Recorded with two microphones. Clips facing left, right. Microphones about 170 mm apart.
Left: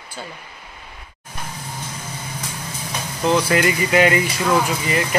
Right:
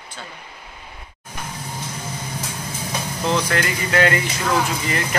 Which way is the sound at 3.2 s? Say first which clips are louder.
Left 5 dB; 5° left (ahead or behind).